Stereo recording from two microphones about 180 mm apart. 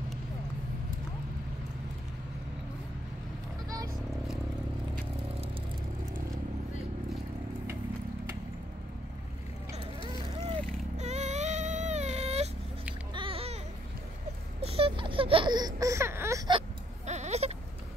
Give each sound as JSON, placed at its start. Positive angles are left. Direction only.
{"t": 9.7, "sound": "vehicle", "side_deg": -25}
{"t": 11.0, "sound": "baby cry", "side_deg": -40}
{"t": 13.1, "sound": "babbling", "side_deg": -30}
{"t": 14.6, "sound": "a sound", "side_deg": -30}
{"t": 17.0, "sound": "bleat", "side_deg": -40}